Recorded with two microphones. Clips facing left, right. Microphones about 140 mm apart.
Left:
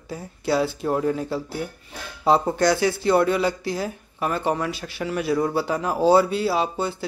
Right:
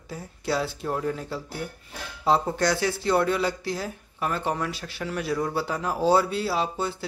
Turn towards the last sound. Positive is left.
turn(degrees=0)  # may be behind; listen again after turning